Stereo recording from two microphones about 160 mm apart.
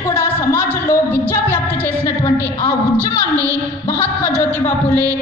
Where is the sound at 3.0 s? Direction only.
20° right (ahead or behind).